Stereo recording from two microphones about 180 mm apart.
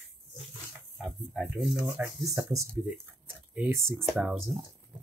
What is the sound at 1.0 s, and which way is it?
Speech, centre (ahead or behind).